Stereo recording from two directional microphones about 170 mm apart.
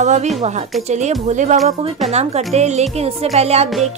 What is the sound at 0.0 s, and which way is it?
A woman's voice, 45° right (ahead or behind).